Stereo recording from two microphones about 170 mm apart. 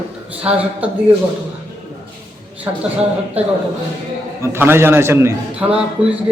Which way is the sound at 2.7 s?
15° right (ahead or behind).